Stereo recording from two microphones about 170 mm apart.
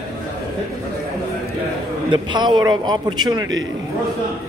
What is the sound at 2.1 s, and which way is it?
A man's voice, 25° right (ahead or behind).